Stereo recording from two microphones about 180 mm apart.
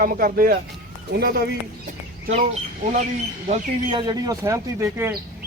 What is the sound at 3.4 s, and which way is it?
Speech, 30° right (ahead or behind).